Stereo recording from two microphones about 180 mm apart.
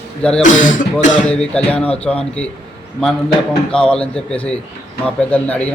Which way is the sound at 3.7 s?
5° left (ahead or behind).